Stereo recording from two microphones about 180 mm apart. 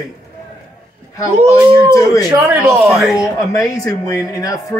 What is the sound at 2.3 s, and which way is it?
Speech, 15° right (ahead or behind).